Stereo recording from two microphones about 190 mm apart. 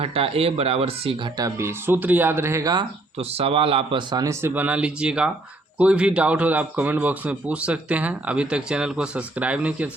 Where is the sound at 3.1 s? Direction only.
30° right (ahead or behind).